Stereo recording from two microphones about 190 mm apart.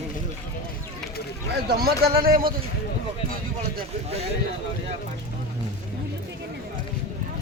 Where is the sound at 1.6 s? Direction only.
55° right (ahead or behind).